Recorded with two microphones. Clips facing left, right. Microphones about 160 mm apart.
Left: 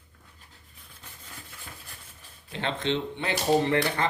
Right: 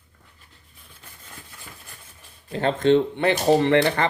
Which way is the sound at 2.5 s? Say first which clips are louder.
Right 10 dB; 45° right (ahead or behind).